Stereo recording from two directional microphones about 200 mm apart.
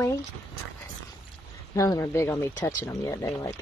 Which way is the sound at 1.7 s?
15° left (ahead or behind).